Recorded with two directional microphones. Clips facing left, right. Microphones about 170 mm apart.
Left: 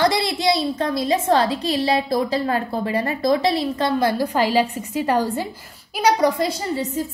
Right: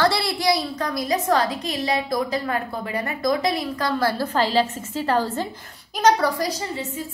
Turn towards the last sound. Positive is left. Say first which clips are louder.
# left 4 dB
turn(degrees=30)  # may be behind; listen again after turning